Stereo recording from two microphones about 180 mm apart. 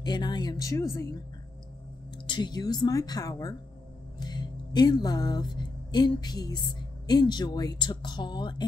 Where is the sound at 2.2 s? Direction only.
25° left (ahead or behind).